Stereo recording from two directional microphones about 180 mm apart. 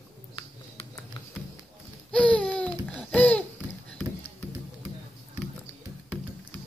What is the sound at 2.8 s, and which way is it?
Babbling, 10° left (ahead or behind).